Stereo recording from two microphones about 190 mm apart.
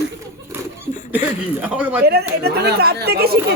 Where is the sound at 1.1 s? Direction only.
5° right (ahead or behind).